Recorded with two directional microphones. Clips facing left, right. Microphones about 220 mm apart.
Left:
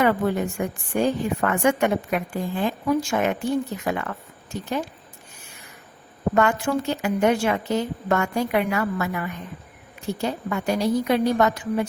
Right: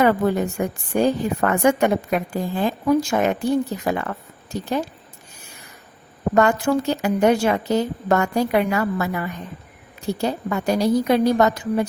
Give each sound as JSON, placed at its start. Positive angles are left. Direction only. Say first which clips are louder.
{"t": 0.0, "sound": "a woman's voice", "louder": "right 3 dB", "side_deg": -40}
{"t": 6.3, "sound": "a woman's voice", "louder": "right 4 dB", "side_deg": -35}